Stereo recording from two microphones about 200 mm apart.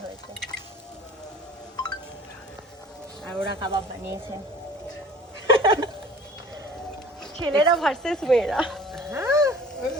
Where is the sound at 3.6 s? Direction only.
15° right (ahead or behind).